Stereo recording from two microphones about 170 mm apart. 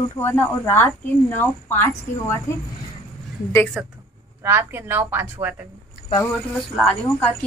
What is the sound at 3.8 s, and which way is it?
Speech, 5° right (ahead or behind).